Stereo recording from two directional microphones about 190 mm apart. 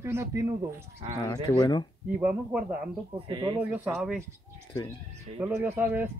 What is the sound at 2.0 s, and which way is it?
Speech, 5° right (ahead or behind).